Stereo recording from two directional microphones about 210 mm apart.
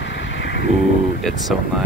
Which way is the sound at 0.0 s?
60° left (ahead or behind).